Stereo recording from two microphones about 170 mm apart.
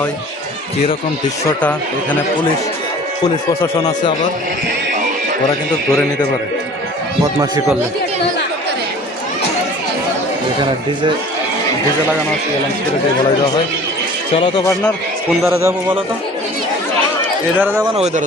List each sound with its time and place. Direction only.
1.5 s speech: 10° left (ahead or behind)
15.4 s a man's voice: 15° right (ahead or behind)
17.6 s a man's voice: 10° right (ahead or behind)
17.9 s speech: 40° right (ahead or behind)